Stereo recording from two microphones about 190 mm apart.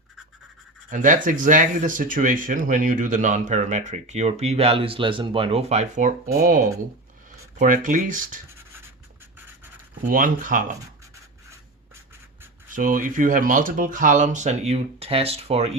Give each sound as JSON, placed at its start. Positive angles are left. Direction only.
{"t": 0.9, "sound": "speech", "side_deg": -40}
{"t": 7.6, "sound": "speech", "side_deg": -45}
{"t": 10.0, "sound": "speech", "side_deg": -45}
{"t": 12.7, "sound": "speech", "side_deg": -45}